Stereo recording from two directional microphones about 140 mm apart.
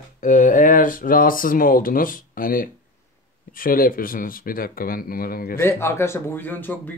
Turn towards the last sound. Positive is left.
turn(degrees=15)  # may be behind; listen again after turning